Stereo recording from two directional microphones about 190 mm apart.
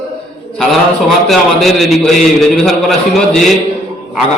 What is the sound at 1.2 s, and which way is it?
A man's voice, centre (ahead or behind).